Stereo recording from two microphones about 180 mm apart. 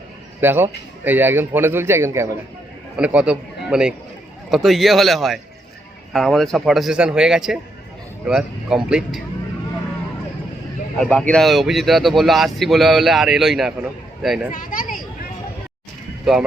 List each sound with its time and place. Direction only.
0.3 s a man's voice: 10° right (ahead or behind)
10.9 s speech: 5° left (ahead or behind)
14.5 s a sound: 50° left (ahead or behind)